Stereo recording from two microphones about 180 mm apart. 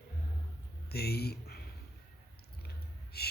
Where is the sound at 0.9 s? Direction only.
60° left (ahead or behind).